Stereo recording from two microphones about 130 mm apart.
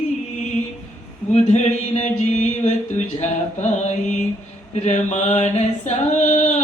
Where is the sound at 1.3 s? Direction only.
60° left (ahead or behind).